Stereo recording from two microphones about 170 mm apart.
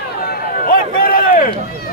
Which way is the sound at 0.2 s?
65° left (ahead or behind).